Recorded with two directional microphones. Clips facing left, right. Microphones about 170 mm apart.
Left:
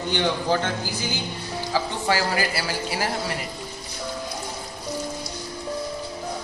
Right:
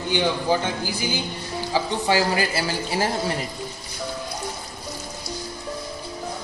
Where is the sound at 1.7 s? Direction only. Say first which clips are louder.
Right 2 dB; 20° right (ahead or behind).